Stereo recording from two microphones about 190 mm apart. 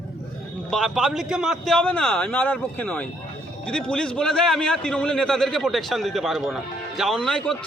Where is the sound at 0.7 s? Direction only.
Centre (ahead or behind).